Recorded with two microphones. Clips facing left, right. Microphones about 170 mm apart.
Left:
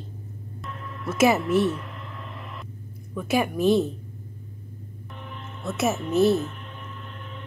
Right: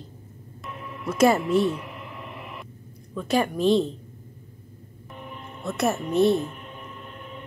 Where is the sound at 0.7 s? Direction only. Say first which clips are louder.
Right 2 dB; 10° right (ahead or behind).